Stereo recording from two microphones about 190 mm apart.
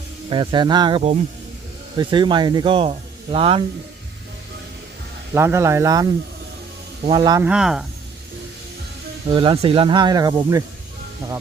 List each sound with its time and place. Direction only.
0.3 s speech: 25° right (ahead or behind)
5.3 s speech: 15° right (ahead or behind)
7.4 s speech: 5° right (ahead or behind)
9.3 s speech: 25° right (ahead or behind)